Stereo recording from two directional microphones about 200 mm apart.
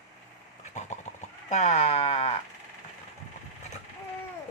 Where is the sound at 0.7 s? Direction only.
35° left (ahead or behind).